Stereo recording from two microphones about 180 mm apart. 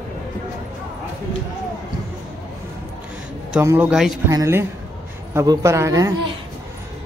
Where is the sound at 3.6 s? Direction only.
10° right (ahead or behind).